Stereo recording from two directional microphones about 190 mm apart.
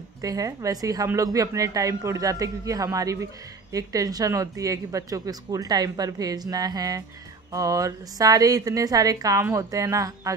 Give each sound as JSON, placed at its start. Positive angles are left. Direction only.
{"t": 0.2, "sound": "a woman's voice", "side_deg": -20}